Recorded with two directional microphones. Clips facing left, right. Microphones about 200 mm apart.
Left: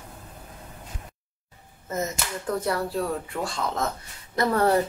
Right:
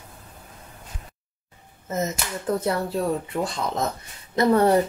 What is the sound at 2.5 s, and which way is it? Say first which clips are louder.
A woman's voice: right 1 dB; 25° right (ahead or behind).